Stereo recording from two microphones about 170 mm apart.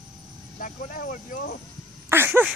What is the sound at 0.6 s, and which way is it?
Speech, 50° left (ahead or behind).